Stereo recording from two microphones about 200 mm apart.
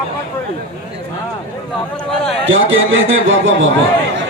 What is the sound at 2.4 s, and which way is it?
Speech, 70° right (ahead or behind).